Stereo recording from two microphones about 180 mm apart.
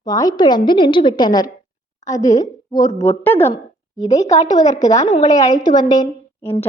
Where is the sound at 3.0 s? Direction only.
15° left (ahead or behind).